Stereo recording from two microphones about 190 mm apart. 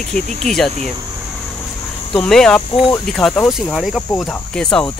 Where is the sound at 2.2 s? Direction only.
5° left (ahead or behind).